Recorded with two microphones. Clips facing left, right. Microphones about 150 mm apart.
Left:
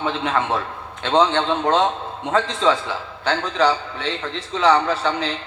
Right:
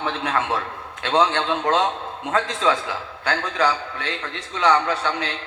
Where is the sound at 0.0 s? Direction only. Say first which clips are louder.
Left 2 dB; 25° left (ahead or behind).